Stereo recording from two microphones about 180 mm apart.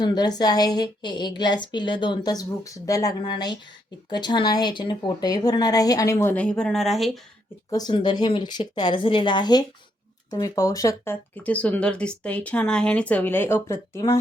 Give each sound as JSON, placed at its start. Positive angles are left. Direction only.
{"t": 0.0, "sound": "a woman's voice", "side_deg": 20}
{"t": 7.7, "sound": "a woman's voice", "side_deg": 25}